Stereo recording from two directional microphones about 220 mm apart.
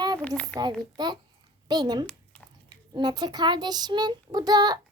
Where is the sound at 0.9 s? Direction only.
20° right (ahead or behind).